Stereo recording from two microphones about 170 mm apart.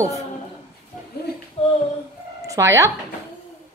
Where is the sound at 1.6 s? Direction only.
35° left (ahead or behind).